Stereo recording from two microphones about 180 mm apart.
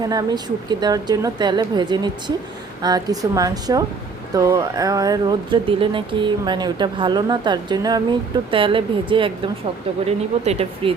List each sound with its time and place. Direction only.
0.0 s speech: 20° right (ahead or behind)